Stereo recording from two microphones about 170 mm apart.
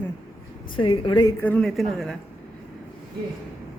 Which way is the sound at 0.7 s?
30° left (ahead or behind).